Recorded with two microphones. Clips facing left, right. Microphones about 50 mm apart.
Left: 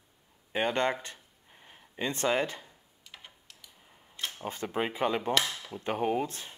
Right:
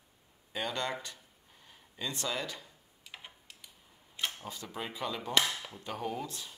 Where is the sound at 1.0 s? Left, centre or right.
Left.